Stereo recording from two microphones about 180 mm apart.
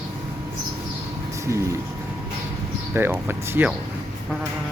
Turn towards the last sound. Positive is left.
turn(degrees=-10)  # may be behind; listen again after turning